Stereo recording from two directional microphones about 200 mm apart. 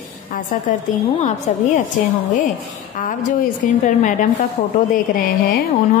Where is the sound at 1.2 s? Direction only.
35° left (ahead or behind).